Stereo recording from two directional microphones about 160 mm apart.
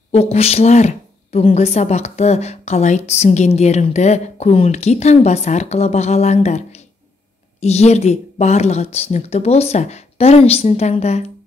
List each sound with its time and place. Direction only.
0.1 s a woman's voice: 40° left (ahead or behind)